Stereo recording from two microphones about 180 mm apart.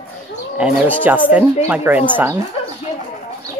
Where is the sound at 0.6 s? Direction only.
5° right (ahead or behind).